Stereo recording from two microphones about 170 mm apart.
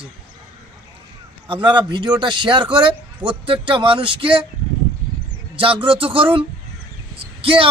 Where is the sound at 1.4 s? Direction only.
30° right (ahead or behind).